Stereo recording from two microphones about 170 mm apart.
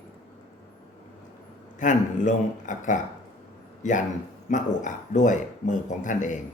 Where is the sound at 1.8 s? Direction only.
50° left (ahead or behind).